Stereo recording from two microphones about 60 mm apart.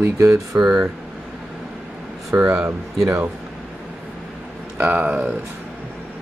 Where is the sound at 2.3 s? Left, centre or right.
Right.